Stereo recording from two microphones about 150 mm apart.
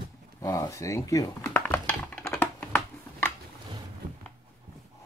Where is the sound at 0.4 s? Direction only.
20° left (ahead or behind).